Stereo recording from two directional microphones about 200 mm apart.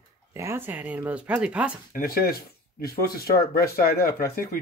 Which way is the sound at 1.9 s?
50° left (ahead or behind).